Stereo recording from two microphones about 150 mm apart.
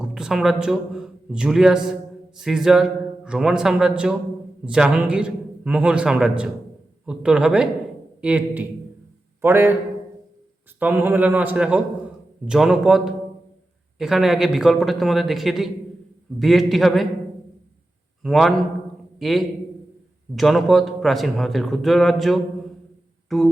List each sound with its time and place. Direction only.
0.0 s a man's voice: 5° right (ahead or behind)
10.8 s a man's voice: 10° right (ahead or behind)
18.2 s a man's voice: centre (ahead or behind)